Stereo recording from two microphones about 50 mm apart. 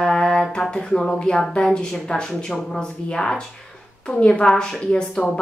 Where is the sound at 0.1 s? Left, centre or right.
Centre.